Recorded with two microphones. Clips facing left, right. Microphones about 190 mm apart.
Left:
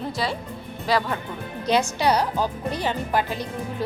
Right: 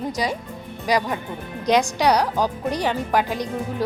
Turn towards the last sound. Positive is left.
turn(degrees=-15)  # may be behind; listen again after turning